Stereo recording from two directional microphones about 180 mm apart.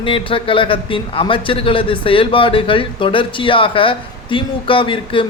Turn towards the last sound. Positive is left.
turn(degrees=30)  # may be behind; listen again after turning